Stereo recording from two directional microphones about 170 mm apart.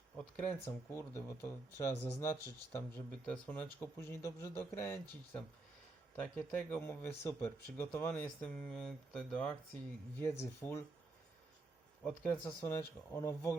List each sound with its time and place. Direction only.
0.2 s speech: 10° left (ahead or behind)
12.0 s speech: 10° left (ahead or behind)